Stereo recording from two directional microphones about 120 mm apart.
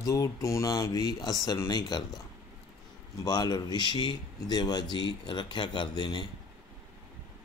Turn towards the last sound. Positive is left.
turn(degrees=40)  # may be behind; listen again after turning